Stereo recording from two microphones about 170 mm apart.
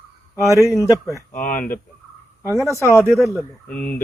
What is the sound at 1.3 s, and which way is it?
Speech, 50° left (ahead or behind).